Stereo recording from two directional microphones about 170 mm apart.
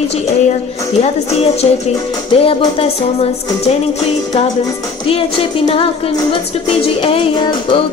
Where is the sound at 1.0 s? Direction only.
35° left (ahead or behind).